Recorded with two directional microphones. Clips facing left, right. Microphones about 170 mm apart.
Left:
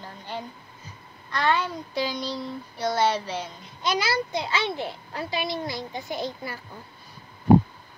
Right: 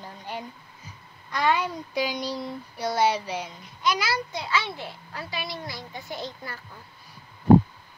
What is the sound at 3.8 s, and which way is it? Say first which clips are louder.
A child's voice: left 1 dB; 25° left (ahead or behind).